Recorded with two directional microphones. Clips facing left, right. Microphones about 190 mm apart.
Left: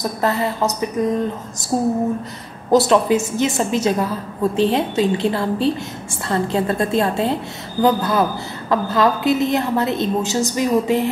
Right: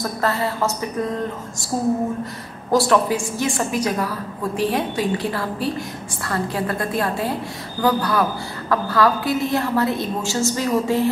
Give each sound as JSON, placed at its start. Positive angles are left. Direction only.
{"t": 0.0, "sound": "speech", "side_deg": 20}
{"t": 2.7, "sound": "a woman's voice", "side_deg": 20}